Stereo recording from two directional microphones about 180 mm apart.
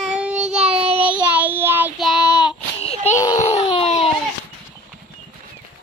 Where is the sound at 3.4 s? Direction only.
35° left (ahead or behind).